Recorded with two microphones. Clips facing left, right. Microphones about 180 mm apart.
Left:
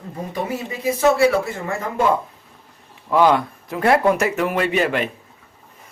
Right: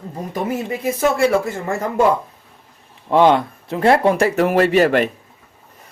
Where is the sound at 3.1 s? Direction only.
25° right (ahead or behind).